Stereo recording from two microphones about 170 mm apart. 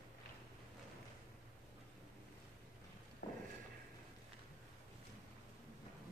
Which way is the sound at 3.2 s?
80° left.